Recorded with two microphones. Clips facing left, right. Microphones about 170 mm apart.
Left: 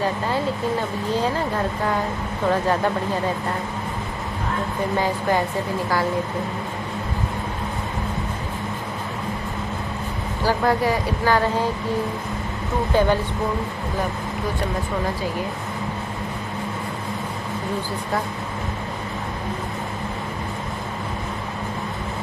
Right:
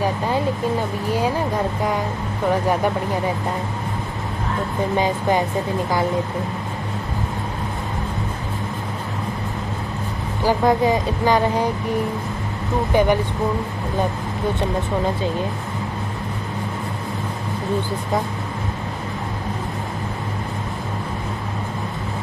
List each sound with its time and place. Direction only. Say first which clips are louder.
4.9 s speech: right 2 dB; 20° right (ahead or behind)
10.4 s speech: right 3 dB; 20° right (ahead or behind)
12.9 s speech: right 2 dB; 15° right (ahead or behind)